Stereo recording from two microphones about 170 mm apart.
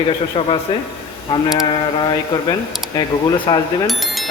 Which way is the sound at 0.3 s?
35° left (ahead or behind).